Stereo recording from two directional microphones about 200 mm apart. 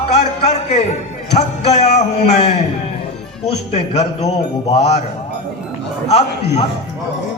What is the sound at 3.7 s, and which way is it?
A man's voice, 30° left (ahead or behind).